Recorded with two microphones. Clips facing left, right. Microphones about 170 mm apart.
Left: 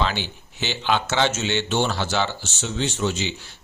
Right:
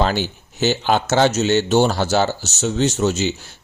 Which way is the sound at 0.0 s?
40° right (ahead or behind).